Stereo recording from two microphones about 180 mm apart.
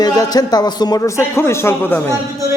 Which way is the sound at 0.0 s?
20° left (ahead or behind).